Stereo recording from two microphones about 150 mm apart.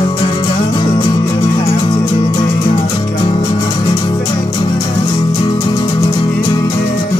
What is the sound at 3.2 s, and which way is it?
Music, 30° left (ahead or behind).